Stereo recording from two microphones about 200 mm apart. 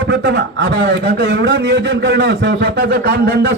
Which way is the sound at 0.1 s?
60° right (ahead or behind).